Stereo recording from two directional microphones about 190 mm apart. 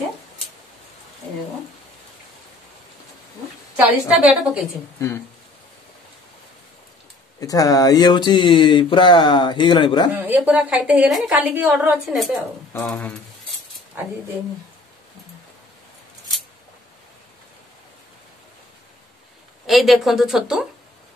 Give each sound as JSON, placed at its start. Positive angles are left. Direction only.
{"t": 4.2, "sound": "a woman's voice", "side_deg": -5}
{"t": 7.3, "sound": "speech", "side_deg": 20}
{"t": 10.1, "sound": "a woman's voice", "side_deg": -10}
{"t": 19.6, "sound": "a woman's voice", "side_deg": 0}